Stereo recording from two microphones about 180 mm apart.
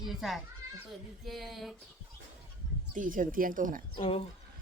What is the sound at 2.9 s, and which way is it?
Speech, 50° right (ahead or behind).